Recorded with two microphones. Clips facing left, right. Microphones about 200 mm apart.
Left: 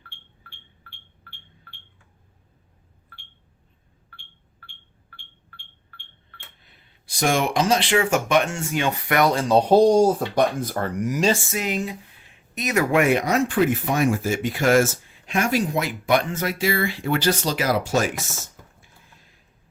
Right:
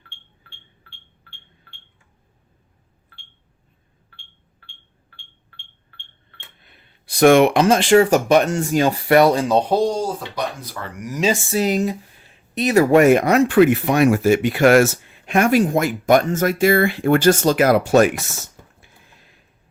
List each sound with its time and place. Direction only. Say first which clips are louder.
6.6 s speech: right 3 dB; 60° right (ahead or behind); by 9.5 s 20° right (ahead or behind)
9.8 s speech: left 5 dB; 50° left (ahead or behind)
11.5 s speech: right 7 dB; 40° right (ahead or behind); by 18.3 s 60° right (ahead or behind)
18.8 s a sound: right 2 dB; 70° right (ahead or behind)